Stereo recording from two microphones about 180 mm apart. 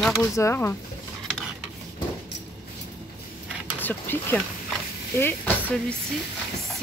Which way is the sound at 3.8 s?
10° left (ahead or behind).